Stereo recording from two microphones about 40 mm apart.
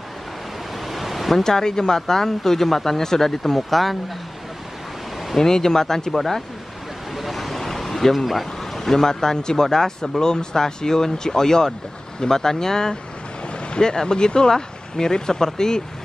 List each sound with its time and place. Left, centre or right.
0.8 s a sound: centre
1.4 s speech: centre
5.4 s speech: centre